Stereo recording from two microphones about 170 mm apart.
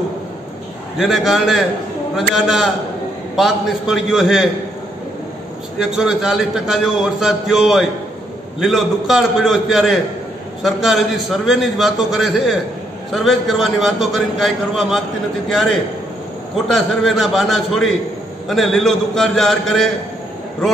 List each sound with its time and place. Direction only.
0.9 s a man's voice: centre (ahead or behind)
5.8 s a man's voice: 5° right (ahead or behind)
16.5 s a man's voice: centre (ahead or behind)